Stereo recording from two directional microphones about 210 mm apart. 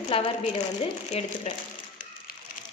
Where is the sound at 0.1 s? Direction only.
25° left (ahead or behind).